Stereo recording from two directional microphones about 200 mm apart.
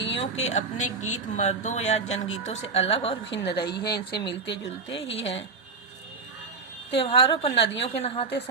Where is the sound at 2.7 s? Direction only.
30° left (ahead or behind).